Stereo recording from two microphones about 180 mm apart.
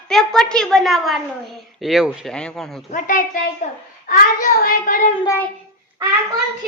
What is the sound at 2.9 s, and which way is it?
A child's voice, 50° left (ahead or behind).